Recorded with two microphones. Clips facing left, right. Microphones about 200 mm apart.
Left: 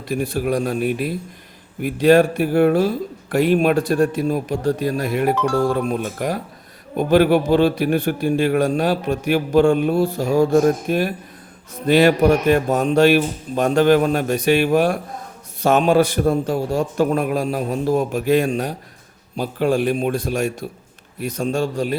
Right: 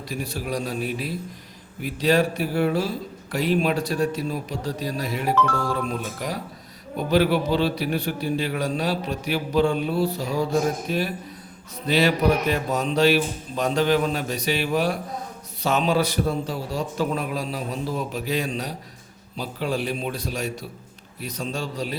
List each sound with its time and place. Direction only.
0.1 s a man's voice: 55° left (ahead or behind)